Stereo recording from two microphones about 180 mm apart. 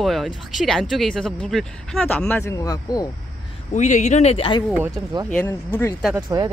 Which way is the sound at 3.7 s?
45° left (ahead or behind).